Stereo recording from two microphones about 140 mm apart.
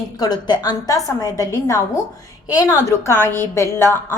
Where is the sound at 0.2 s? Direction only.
30° left (ahead or behind).